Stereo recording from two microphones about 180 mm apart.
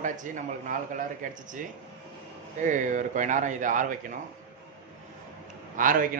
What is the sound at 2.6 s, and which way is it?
A man's voice, 45° right (ahead or behind).